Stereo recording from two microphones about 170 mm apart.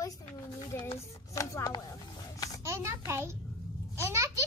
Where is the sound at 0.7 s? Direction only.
15° left (ahead or behind).